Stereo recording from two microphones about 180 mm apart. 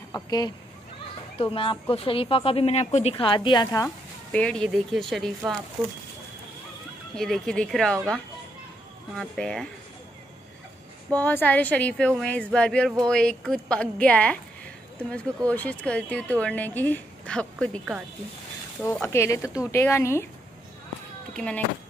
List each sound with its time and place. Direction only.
0.1 s a woman's voice: 20° left (ahead or behind)
3.8 s speech: 5° left (ahead or behind)
7.2 s a woman's voice: centre (ahead or behind)
9.1 s a woman's voice: 5° left (ahead or behind)
11.1 s a woman's voice: 10° left (ahead or behind)
21.3 s a sound: 5° left (ahead or behind)